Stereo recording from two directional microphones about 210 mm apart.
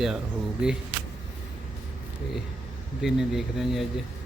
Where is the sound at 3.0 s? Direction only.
Centre (ahead or behind).